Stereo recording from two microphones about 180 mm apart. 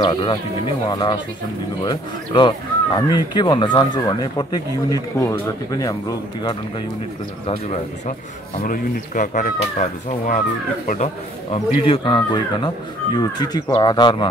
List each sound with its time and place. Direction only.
0.0 s speech: 25° left (ahead or behind)
8.6 s speech: 45° left (ahead or behind)
11.5 s speech: 30° left (ahead or behind)